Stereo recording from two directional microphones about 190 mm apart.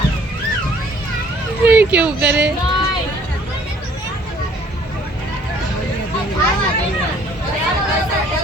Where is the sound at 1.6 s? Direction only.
10° right (ahead or behind).